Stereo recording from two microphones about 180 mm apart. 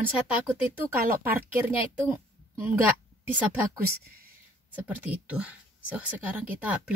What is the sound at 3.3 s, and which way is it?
Speech, 10° right (ahead or behind).